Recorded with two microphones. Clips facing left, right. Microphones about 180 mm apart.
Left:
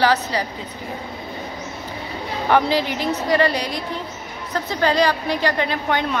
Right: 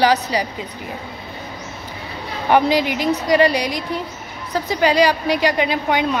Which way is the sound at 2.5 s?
15° right (ahead or behind).